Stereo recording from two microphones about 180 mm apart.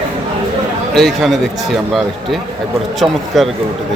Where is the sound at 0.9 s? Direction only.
Centre (ahead or behind).